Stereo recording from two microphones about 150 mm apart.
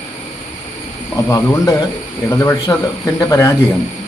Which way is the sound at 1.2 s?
20° left (ahead or behind).